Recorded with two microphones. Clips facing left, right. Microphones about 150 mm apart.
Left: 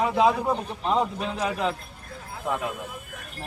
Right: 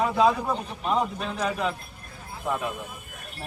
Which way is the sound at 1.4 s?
10° left (ahead or behind).